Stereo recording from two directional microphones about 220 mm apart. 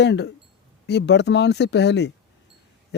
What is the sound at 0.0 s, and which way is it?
A man's voice, 50° left (ahead or behind).